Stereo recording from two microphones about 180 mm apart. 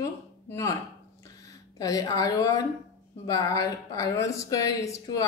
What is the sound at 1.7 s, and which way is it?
Speech, 20° left (ahead or behind).